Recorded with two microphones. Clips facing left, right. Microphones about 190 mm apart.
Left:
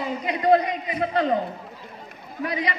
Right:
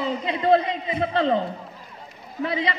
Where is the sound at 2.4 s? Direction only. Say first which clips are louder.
Right 2 dB; 25° right (ahead or behind).